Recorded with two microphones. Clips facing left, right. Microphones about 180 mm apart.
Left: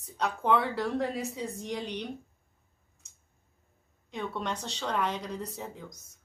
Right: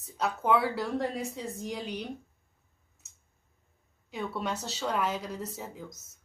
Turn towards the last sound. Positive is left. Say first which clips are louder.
# even
turn(degrees=0)  # may be behind; listen again after turning